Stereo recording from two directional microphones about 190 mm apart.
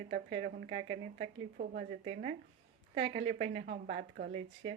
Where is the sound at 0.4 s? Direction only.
50° right (ahead or behind).